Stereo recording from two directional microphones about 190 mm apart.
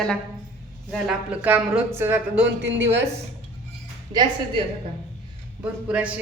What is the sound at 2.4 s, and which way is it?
Speech, 70° right (ahead or behind).